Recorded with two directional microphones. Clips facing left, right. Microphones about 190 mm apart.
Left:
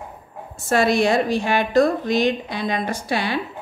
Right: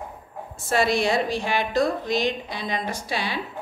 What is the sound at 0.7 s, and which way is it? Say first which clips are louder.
A woman's voice: left 4 dB; 50° left (ahead or behind).